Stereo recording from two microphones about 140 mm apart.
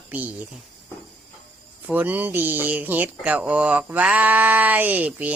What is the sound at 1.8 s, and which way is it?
Speech, 10° right (ahead or behind).